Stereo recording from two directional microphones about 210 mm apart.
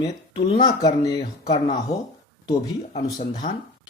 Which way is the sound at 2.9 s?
35° left (ahead or behind).